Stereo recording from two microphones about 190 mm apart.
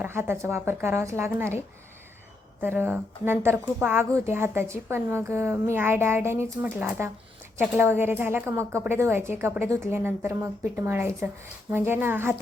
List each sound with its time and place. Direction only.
0.0 s a woman's voice: 10° right (ahead or behind)
2.6 s a woman's voice: 10° right (ahead or behind)